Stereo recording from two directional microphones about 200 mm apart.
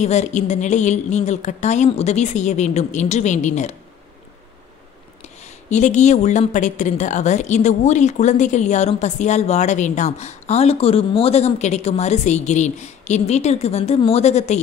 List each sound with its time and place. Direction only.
0.0 s a woman's voice: 35° left (ahead or behind)
5.2 s a woman's voice: 35° left (ahead or behind)